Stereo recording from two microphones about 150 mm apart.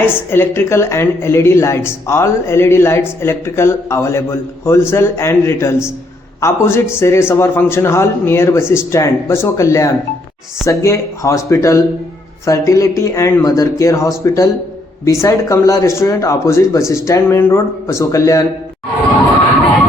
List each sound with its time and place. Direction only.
0.3 s speech: 15° left (ahead or behind)